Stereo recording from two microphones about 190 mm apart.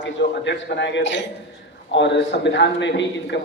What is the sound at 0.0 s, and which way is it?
A man's voice, 70° left (ahead or behind).